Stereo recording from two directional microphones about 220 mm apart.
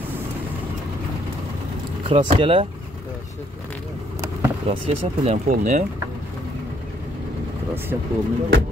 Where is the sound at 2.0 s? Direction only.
30° right (ahead or behind).